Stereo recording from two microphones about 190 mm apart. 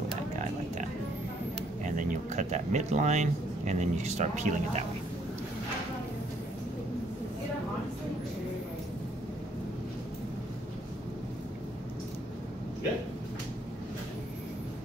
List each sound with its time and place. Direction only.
1.9 s speech: 45° right (ahead or behind)